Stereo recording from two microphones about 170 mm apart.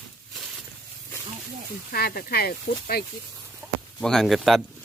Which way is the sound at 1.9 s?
65° left (ahead or behind).